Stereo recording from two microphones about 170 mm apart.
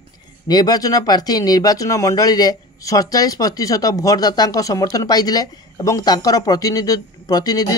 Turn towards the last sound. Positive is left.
turn(degrees=20)  # may be behind; listen again after turning